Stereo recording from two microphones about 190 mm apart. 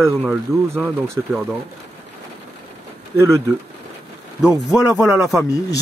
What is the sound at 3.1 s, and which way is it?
Speech, 15° right (ahead or behind).